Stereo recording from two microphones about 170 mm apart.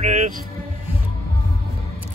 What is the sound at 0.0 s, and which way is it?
Music, 45° right (ahead or behind).